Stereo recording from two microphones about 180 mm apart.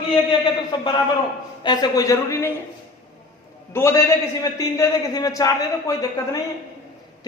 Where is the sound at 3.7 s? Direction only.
15° left (ahead or behind).